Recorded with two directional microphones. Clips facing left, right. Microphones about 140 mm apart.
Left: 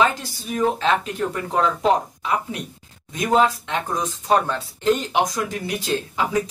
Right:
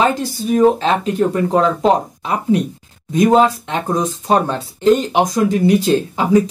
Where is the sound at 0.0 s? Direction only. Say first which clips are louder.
Right 5 dB; 30° right (ahead or behind).